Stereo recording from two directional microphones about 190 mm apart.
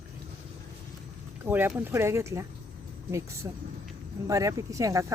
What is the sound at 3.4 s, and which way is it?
Speech, 15° right (ahead or behind).